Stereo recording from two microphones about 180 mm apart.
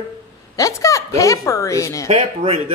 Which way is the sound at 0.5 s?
15° left (ahead or behind).